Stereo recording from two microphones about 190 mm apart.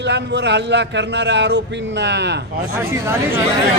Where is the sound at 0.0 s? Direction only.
65° right (ahead or behind).